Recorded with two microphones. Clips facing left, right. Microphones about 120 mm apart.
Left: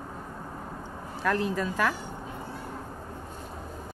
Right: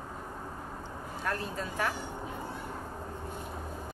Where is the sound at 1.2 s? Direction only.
90° left.